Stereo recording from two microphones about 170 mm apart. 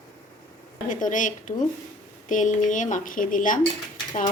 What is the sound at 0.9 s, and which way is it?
Speech, 50° left (ahead or behind).